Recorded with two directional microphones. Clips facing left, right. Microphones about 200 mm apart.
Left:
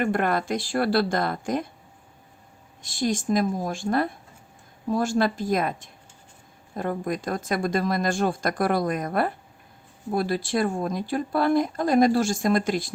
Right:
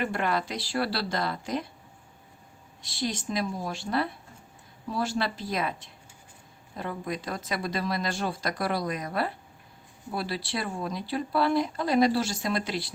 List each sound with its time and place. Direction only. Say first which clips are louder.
0.0 s speech: left 5 dB; 50° left (ahead or behind)
2.8 s speech: left 6 dB; 45° left (ahead or behind)